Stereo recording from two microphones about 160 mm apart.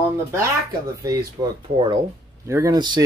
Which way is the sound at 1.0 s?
25° right (ahead or behind).